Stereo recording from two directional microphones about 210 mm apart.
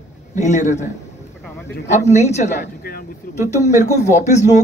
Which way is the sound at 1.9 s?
30° left (ahead or behind).